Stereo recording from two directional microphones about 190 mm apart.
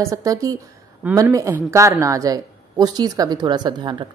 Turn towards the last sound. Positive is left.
turn(degrees=-25)  # may be behind; listen again after turning